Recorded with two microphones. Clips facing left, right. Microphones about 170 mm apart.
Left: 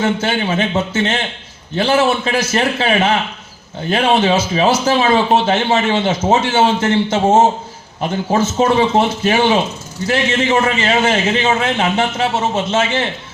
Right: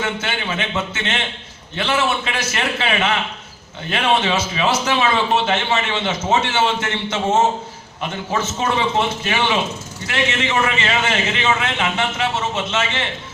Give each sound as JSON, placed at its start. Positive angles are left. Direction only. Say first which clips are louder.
{"t": 0.0, "sound": "a man's voice", "louder": "left 7 dB", "side_deg": 35}